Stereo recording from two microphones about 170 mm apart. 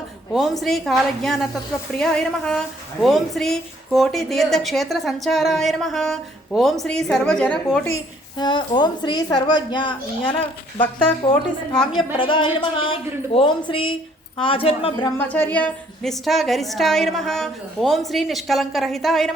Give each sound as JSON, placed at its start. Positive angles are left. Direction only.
{"t": 0.3, "sound": "a woman's voice", "side_deg": 0}
{"t": 7.9, "sound": "a woman's voice", "side_deg": 25}
{"t": 11.3, "sound": "a woman's voice", "side_deg": 30}
{"t": 15.2, "sound": "a woman's voice", "side_deg": 10}